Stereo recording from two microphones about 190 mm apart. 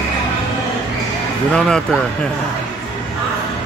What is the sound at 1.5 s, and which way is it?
Speech, 5° left (ahead or behind).